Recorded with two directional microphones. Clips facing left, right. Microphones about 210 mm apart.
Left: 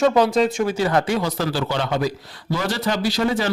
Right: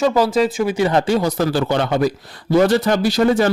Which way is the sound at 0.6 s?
15° right (ahead or behind).